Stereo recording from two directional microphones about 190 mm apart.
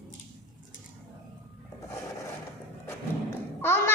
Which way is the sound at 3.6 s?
10° left (ahead or behind).